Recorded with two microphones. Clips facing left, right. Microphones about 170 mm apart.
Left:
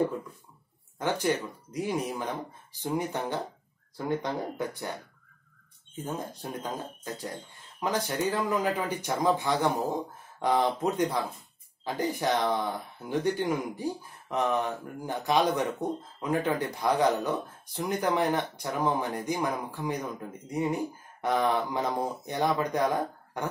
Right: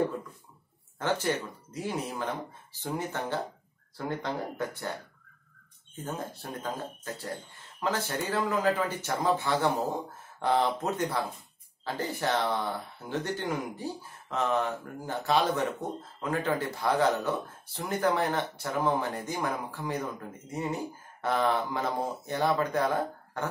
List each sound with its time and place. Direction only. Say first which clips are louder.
0.9 s speech: left 1 dB; 15° left (ahead or behind)
5.9 s speech: left 1 dB; 10° left (ahead or behind)